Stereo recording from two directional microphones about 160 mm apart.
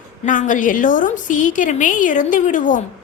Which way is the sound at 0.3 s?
55° left (ahead or behind).